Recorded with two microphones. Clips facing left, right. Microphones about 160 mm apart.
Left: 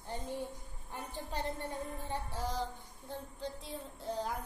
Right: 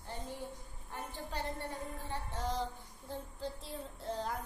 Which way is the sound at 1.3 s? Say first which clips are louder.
Left 2 dB; 20° left (ahead or behind).